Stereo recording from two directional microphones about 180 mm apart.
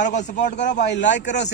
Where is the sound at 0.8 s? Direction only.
75° left (ahead or behind).